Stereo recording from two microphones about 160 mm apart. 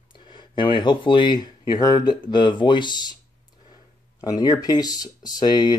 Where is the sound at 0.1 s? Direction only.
30° left (ahead or behind).